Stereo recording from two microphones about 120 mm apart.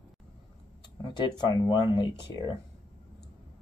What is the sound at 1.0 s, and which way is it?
Speech, 40° left (ahead or behind).